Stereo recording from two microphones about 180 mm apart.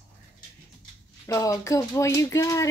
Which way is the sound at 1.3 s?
15° left (ahead or behind).